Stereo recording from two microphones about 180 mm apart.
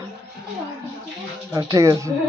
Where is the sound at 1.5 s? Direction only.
20° right (ahead or behind).